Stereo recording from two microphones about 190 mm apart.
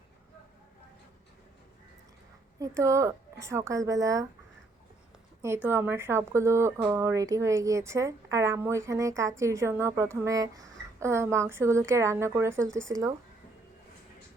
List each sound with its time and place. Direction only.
2.6 s speech: 15° right (ahead or behind)
5.4 s speech: 10° right (ahead or behind)